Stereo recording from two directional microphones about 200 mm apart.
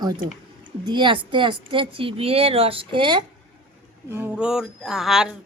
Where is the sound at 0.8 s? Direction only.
25° right (ahead or behind).